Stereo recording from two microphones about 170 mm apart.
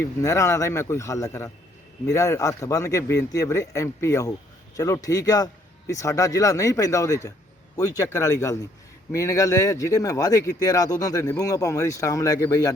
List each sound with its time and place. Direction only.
0.2 s a man's voice: 15° left (ahead or behind)